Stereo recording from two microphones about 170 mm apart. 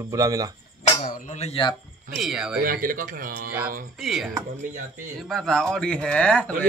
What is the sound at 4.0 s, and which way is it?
Speech, centre (ahead or behind).